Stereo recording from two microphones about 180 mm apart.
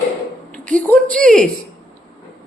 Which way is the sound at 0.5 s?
5° left (ahead or behind).